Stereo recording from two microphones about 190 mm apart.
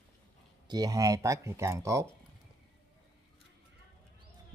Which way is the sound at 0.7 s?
20° right (ahead or behind).